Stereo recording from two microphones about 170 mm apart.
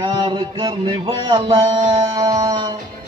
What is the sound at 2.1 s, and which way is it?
Music, 20° right (ahead or behind).